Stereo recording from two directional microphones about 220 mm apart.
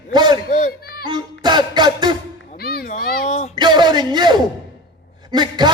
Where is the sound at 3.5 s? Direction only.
20° right (ahead or behind).